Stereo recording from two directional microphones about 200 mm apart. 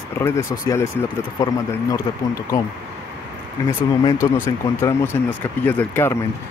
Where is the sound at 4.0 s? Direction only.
15° left (ahead or behind).